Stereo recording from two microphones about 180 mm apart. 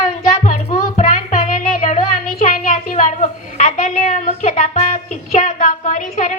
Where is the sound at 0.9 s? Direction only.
40° left (ahead or behind).